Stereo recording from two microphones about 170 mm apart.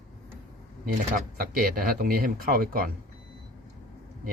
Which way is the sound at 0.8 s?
60° right (ahead or behind).